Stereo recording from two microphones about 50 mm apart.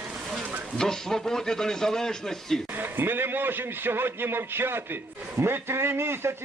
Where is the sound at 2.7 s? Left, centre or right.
Right.